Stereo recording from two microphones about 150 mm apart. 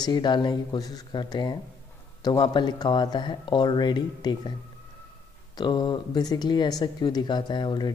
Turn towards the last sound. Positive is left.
turn(degrees=30)  # may be behind; listen again after turning